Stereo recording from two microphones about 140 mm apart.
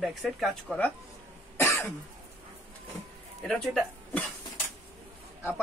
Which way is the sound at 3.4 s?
5° left (ahead or behind).